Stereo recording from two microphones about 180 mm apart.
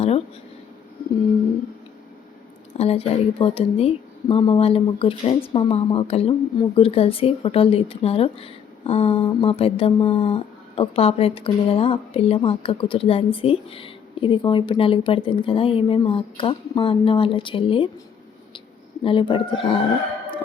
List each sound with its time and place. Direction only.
2.7 s speech: 35° left (ahead or behind)
19.0 s speech: 30° left (ahead or behind)